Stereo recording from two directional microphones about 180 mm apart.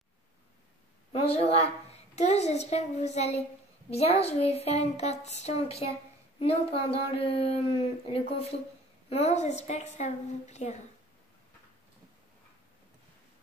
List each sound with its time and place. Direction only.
1.1 s a woman's voice: 35° left (ahead or behind)